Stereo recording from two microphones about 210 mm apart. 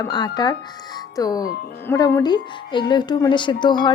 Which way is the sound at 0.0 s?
20° left (ahead or behind).